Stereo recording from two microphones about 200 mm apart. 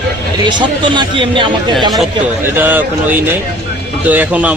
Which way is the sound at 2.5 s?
10° right (ahead or behind).